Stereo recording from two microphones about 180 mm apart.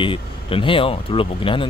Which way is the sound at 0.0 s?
30° left (ahead or behind).